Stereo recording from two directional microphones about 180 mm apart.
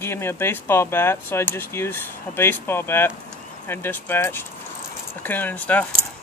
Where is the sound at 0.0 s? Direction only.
15° left (ahead or behind).